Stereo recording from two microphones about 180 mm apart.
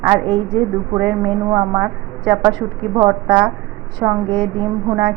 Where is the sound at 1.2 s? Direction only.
25° right (ahead or behind).